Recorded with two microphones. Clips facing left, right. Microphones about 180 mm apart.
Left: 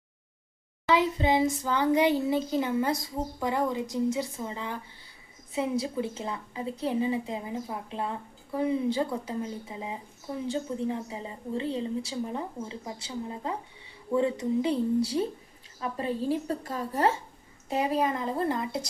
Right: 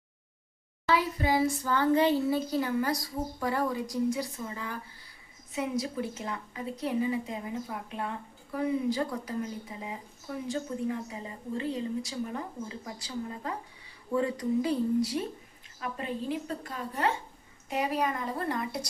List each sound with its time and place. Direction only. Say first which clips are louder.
0.9 s a woman's voice: left 3 dB; 20° left (ahead or behind)